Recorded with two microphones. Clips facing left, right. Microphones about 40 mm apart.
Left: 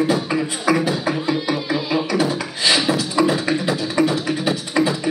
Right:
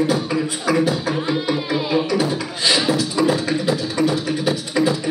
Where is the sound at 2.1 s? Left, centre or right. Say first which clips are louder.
Even; left.